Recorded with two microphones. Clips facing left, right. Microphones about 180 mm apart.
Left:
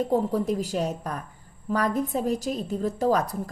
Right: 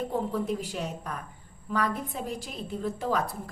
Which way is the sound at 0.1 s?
40° left (ahead or behind).